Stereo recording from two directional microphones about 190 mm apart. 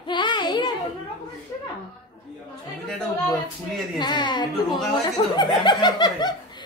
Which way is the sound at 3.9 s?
25° left (ahead or behind).